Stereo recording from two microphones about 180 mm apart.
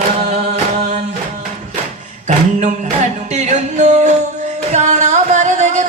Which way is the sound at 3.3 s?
40° right (ahead or behind).